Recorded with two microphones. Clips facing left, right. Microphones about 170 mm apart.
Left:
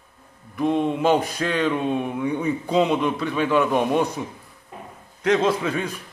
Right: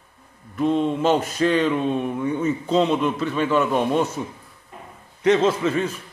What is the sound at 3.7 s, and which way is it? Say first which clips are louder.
Speech: even; 15° left (ahead or behind).